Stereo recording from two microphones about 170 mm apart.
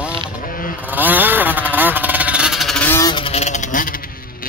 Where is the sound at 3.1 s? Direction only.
30° left (ahead or behind); by 3.9 s 50° left (ahead or behind).